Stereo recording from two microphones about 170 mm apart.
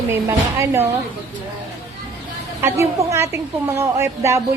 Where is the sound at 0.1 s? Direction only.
15° right (ahead or behind).